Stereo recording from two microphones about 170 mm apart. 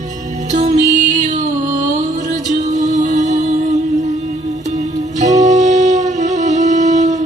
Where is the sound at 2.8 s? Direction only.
45° right (ahead or behind).